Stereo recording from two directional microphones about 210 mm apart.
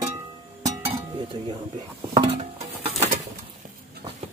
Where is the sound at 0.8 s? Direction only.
25° right (ahead or behind).